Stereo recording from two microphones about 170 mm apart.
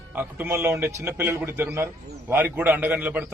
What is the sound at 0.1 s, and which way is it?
A man's voice, 10° right (ahead or behind).